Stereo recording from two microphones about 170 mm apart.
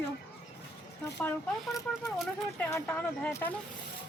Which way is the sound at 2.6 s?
15° left (ahead or behind).